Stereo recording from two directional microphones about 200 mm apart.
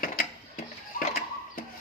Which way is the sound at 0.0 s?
45° left (ahead or behind).